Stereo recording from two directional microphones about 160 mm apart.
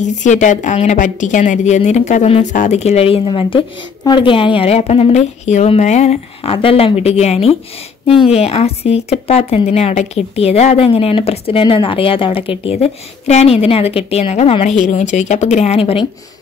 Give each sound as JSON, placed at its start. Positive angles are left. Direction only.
{"t": 0.0, "sound": "a woman's voice", "side_deg": 50}